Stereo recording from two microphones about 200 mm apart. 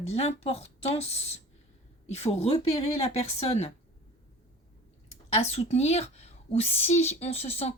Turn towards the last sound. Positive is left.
turn(degrees=30)  # may be behind; listen again after turning